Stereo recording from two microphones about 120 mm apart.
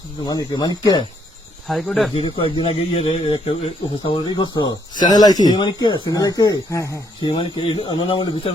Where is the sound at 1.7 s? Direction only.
Centre (ahead or behind).